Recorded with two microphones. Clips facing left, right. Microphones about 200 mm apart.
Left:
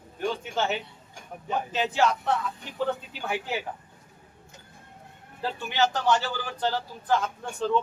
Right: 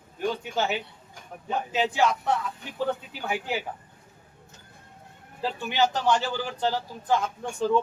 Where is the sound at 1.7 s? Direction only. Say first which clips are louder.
Right 1 dB; 10° right (ahead or behind).